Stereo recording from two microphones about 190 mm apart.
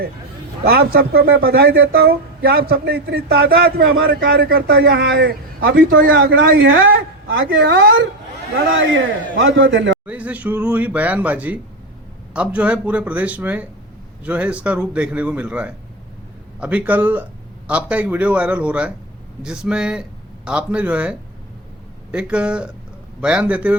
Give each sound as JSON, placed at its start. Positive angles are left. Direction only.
{"t": 0.6, "sound": "speech", "side_deg": -55}
{"t": 6.7, "sound": "a man's voice", "side_deg": -90}
{"t": 8.5, "sound": "a man's voice", "side_deg": -90}
{"t": 10.1, "sound": "speech", "side_deg": -5}